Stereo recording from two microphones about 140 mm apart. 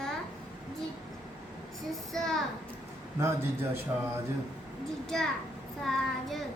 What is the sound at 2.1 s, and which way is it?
Speech, 5° left (ahead or behind).